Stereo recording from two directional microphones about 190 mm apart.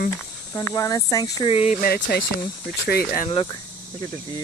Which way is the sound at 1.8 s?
55° left (ahead or behind).